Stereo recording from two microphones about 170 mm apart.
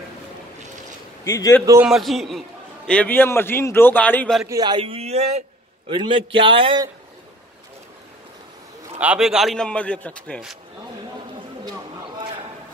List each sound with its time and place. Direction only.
1.2 s a man's voice: 15° left (ahead or behind)
1.9 s a man's voice: centre (ahead or behind)
4.5 s a man's voice: 25° right (ahead or behind)
9.0 s a man's voice: 5° right (ahead or behind)